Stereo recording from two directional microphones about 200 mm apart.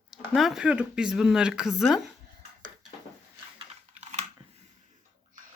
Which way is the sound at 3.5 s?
35° right (ahead or behind).